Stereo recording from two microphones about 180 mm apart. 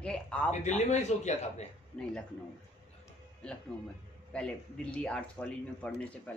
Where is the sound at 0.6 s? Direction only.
40° left (ahead or behind).